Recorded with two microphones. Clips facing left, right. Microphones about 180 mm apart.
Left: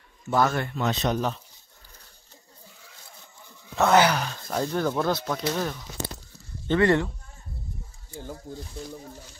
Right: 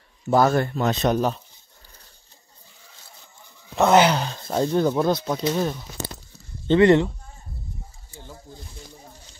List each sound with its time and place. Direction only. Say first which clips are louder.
0.3 s speech: right 5 dB; 40° right (ahead or behind)
3.7 s speech: right 3 dB; 20° right (ahead or behind)